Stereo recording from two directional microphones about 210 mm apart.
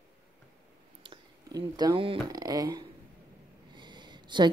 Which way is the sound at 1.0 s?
20° right (ahead or behind).